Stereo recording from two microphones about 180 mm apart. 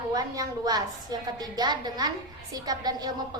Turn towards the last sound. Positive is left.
turn(degrees=-20)  # may be behind; listen again after turning